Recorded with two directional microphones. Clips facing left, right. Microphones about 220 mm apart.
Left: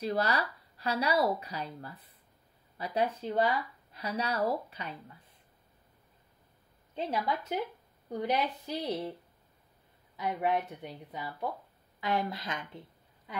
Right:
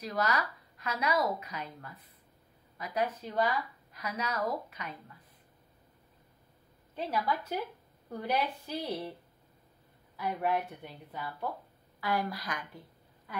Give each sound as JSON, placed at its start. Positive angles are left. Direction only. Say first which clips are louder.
{"t": 0.0, "sound": "a woman's voice", "louder": "left 2 dB", "side_deg": 30}
{"t": 7.0, "sound": "a woman's voice", "louder": "even", "side_deg": 25}
{"t": 10.1, "sound": "a woman's voice", "louder": "left 1 dB", "side_deg": 20}